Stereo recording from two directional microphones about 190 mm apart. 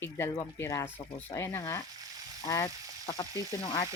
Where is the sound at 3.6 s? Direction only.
25° left (ahead or behind).